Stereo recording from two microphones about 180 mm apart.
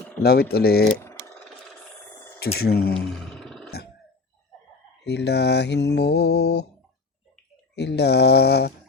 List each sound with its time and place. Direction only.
0.2 s speech: 60° left (ahead or behind)
1.5 s a sound: 5° left (ahead or behind)
2.4 s speech: 60° left (ahead or behind)
2.9 s roar: 5° left (ahead or behind)
5.0 s mantra: 70° left (ahead or behind)
7.8 s mantra: 70° left (ahead or behind)